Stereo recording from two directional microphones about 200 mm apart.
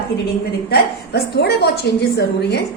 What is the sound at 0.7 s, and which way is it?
A woman's voice, 55° left (ahead or behind).